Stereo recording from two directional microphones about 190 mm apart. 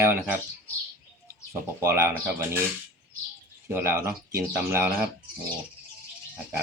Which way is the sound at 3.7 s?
15° right (ahead or behind).